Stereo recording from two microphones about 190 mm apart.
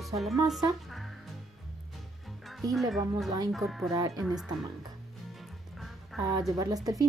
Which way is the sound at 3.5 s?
Centre (ahead or behind).